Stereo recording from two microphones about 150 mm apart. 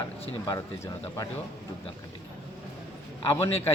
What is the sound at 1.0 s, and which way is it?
Speech, 20° left (ahead or behind).